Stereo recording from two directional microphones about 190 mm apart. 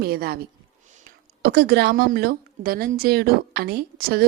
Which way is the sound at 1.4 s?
60° right (ahead or behind).